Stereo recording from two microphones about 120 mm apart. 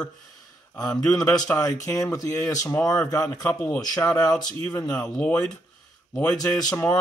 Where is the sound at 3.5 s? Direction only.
15° left (ahead or behind).